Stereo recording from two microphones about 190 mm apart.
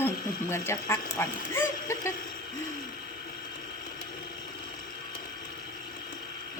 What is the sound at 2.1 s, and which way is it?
Hoot, 45° left (ahead or behind).